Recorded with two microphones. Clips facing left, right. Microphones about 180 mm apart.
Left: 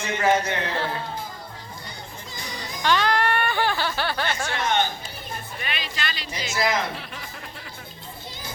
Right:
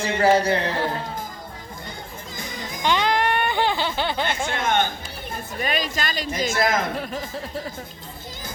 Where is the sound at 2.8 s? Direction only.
20° right (ahead or behind).